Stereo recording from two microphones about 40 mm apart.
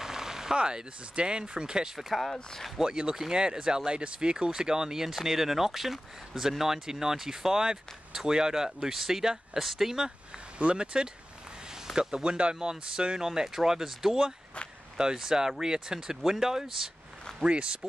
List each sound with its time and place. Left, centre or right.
0.0 s a sound: centre
0.6 s speech: right
2.0 s speech: centre
2.2 s speech: centre
3.2 s speech: centre
9.6 s speech: centre
10.6 s speech: right; by 16.9 s centre
17.5 s speech: right